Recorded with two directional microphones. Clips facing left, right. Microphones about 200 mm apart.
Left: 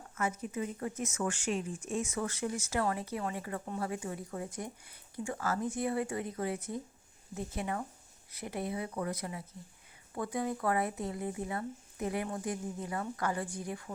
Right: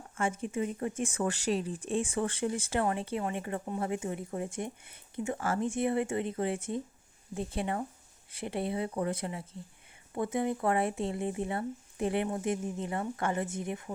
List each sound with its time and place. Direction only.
0.2 s speech: 25° right (ahead or behind)